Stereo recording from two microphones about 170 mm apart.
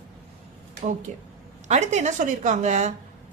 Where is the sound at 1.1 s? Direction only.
45° right (ahead or behind).